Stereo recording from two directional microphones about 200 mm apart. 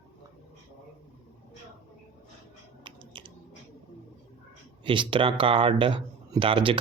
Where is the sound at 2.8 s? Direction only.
25° right (ahead or behind).